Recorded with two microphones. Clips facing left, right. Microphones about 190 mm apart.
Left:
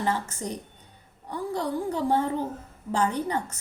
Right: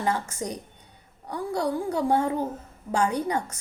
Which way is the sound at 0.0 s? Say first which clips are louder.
Right 1 dB; 15° right (ahead or behind).